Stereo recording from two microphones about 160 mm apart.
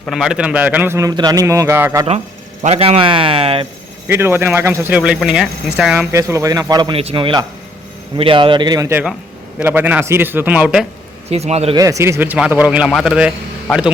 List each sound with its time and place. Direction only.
0.0 s speech: centre (ahead or behind)
2.6 s a man's voice: 40° right (ahead or behind)
4.1 s speech: 15° right (ahead or behind)
9.6 s speech: 10° right (ahead or behind)
11.3 s a man's voice: 40° right (ahead or behind)
11.8 s speech: 20° right (ahead or behind); by 13.9 s 5° right (ahead or behind)